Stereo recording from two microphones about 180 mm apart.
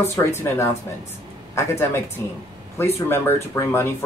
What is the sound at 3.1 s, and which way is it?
Speech, 15° left (ahead or behind).